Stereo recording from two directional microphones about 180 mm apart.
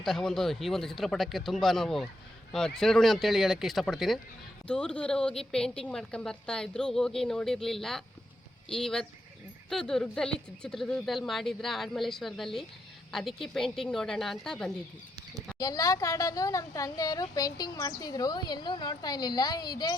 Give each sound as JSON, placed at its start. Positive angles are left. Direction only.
{"t": 0.0, "sound": "speech", "side_deg": 5}
{"t": 15.5, "sound": "a woman's voice", "side_deg": 20}